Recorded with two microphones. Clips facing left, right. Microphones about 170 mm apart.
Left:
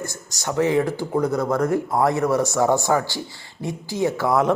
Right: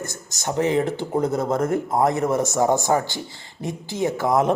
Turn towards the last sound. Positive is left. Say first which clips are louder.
# even
turn(degrees=-20)  # may be behind; listen again after turning